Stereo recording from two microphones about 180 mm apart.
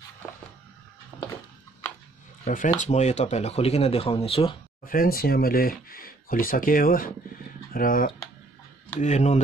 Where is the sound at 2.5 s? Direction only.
45° left (ahead or behind).